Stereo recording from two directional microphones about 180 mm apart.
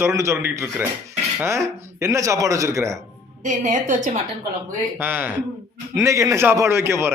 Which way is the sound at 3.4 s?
45° right (ahead or behind).